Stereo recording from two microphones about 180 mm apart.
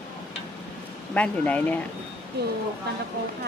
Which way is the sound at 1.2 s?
10° left (ahead or behind).